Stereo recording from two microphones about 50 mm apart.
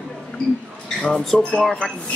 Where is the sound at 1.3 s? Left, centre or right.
Centre.